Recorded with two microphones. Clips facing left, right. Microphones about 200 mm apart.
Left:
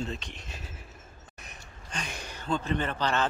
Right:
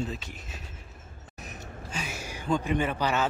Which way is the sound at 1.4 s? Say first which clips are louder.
Right 9 dB; 5° right (ahead or behind).